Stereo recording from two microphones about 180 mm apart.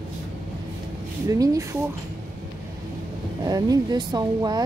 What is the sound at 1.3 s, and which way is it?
Speech, 20° right (ahead or behind).